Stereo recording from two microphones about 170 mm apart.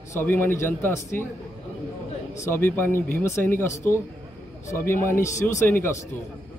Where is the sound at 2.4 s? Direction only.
15° left (ahead or behind).